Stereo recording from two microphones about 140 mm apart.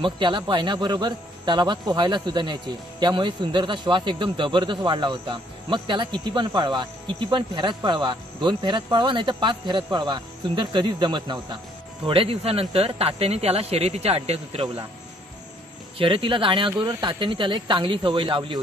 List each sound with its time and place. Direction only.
0.0 s speech: 35° right (ahead or behind)
16.0 s speech: 40° right (ahead or behind)